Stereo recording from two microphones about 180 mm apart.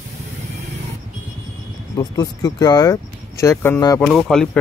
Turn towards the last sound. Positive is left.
turn(degrees=0)  # may be behind; listen again after turning